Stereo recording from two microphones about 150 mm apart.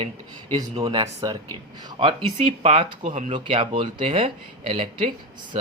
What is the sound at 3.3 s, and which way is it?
A woman's voice, 35° right (ahead or behind).